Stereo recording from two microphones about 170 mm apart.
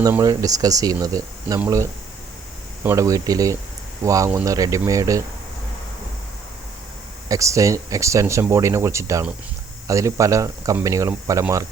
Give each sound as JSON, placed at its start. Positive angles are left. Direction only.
{"t": 0.0, "sound": "speech", "side_deg": -20}
{"t": 7.3, "sound": "speech", "side_deg": -20}